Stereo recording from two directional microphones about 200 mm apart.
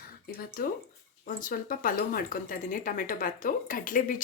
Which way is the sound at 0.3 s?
45° left (ahead or behind).